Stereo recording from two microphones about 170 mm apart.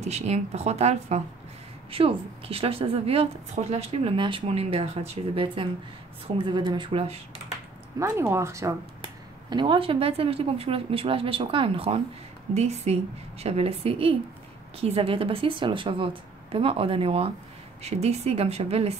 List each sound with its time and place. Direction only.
0.0 s a woman's voice: 40° right (ahead or behind)
8.0 s speech: 15° right (ahead or behind)
9.0 s a woman's voice: 30° right (ahead or behind)